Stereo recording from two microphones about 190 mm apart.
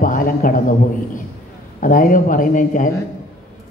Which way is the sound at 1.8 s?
45° left (ahead or behind).